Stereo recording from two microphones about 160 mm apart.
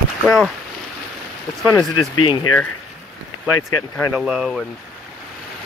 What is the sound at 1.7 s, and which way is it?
Speech, 30° left (ahead or behind).